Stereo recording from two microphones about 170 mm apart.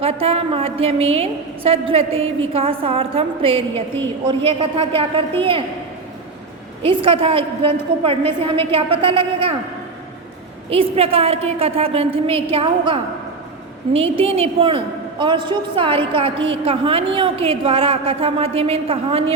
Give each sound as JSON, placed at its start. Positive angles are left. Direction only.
{"t": 0.0, "sound": "a woman's voice", "side_deg": -35}
{"t": 6.8, "sound": "a woman's voice", "side_deg": -35}
{"t": 10.7, "sound": "a woman's voice", "side_deg": -35}